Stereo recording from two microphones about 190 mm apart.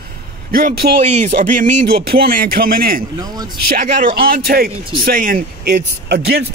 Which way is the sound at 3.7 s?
50° right (ahead or behind).